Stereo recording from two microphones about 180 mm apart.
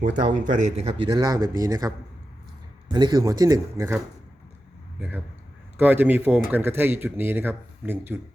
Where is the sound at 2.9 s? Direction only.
20° right (ahead or behind).